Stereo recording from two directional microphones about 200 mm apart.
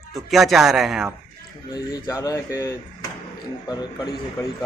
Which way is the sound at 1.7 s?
20° left (ahead or behind).